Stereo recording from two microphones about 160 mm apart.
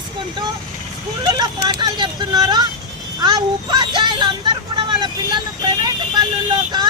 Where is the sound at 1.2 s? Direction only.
25° right (ahead or behind).